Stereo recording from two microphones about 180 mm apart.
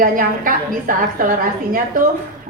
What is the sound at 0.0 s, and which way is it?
A woman's voice, 50° right (ahead or behind).